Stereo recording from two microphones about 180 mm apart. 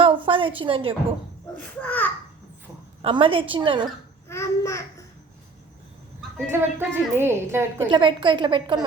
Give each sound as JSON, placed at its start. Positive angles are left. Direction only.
{"t": 0.0, "sound": "a woman's voice", "side_deg": -30}
{"t": 1.5, "sound": "a child's voice", "side_deg": 5}
{"t": 3.0, "sound": "a woman's voice", "side_deg": -30}
{"t": 4.3, "sound": "a child's voice", "side_deg": 15}
{"t": 6.3, "sound": "a woman's voice", "side_deg": -10}
{"t": 7.9, "sound": "a woman's voice", "side_deg": -25}